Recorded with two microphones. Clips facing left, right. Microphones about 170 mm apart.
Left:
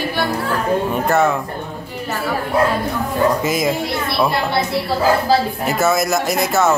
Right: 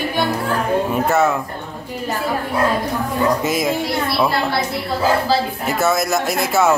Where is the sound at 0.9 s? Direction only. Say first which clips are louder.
Even; 5° right (ahead or behind).